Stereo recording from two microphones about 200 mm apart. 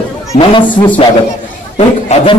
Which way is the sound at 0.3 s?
25° left (ahead or behind).